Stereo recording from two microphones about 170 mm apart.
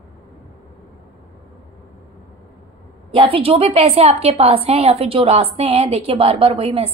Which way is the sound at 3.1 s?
35° right (ahead or behind).